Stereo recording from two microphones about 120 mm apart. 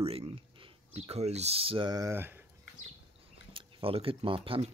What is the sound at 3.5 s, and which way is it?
Speech, 50° right (ahead or behind).